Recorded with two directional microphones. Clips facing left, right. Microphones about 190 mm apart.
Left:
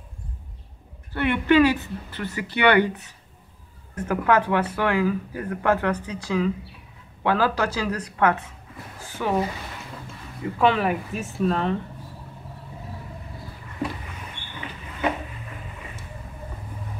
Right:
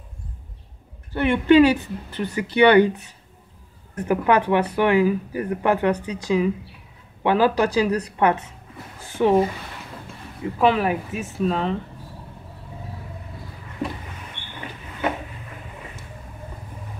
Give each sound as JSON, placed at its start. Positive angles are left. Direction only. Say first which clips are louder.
{"t": 1.1, "sound": "speech", "louder": "right 4 dB", "side_deg": -20}
{"t": 3.9, "sound": "speech", "louder": "right 2 dB", "side_deg": -15}
{"t": 10.6, "sound": "speech", "louder": "right 2 dB", "side_deg": -5}